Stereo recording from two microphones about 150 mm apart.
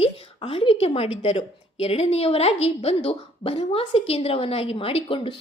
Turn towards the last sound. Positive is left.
turn(degrees=35)  # may be behind; listen again after turning